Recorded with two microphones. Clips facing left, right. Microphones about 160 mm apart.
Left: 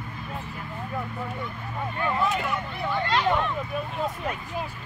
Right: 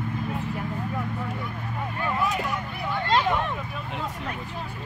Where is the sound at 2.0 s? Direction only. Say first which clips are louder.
Left 1 dB; 15° right (ahead or behind).